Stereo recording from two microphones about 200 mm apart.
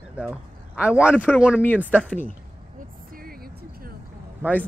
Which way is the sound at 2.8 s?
45° right (ahead or behind).